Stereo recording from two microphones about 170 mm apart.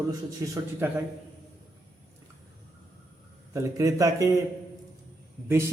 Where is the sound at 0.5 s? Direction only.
15° right (ahead or behind).